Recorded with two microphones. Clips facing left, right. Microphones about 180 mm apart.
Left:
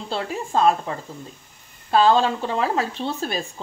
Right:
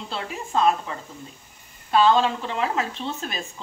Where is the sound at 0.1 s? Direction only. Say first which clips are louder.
Left 3 dB; 35° left (ahead or behind).